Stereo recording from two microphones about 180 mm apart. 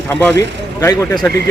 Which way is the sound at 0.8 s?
15° left (ahead or behind).